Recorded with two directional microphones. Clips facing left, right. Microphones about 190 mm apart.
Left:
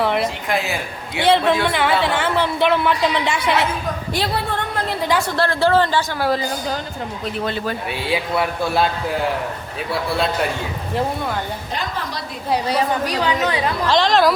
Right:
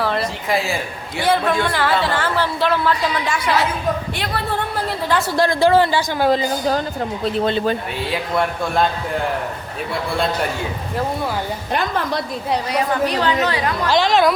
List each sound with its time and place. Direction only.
0.0 s a sound: 20° left (ahead or behind)
0.4 s a man's voice: centre (ahead or behind)
1.2 s a woman's voice: 25° left (ahead or behind)
5.3 s speech: 15° right (ahead or behind)
8.1 s a man's voice: 5° left (ahead or behind)
13.1 s a woman's voice: 10° left (ahead or behind)
13.9 s a man's voice: centre (ahead or behind)